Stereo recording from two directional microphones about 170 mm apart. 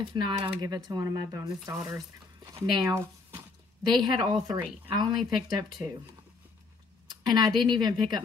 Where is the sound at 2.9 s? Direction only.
15° right (ahead or behind).